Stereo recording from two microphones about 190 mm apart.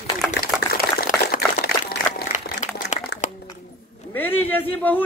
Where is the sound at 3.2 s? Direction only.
40° left (ahead or behind).